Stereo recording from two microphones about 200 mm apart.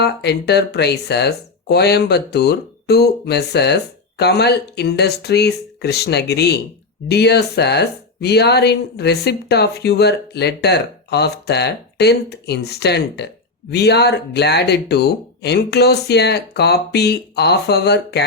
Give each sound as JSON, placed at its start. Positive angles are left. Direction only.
{"t": 0.0, "sound": "speech", "side_deg": 55}